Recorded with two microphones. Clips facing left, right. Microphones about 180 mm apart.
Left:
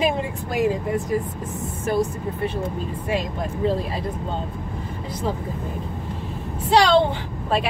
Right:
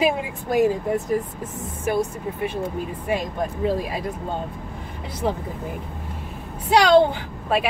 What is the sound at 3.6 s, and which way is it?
Speech, 10° right (ahead or behind).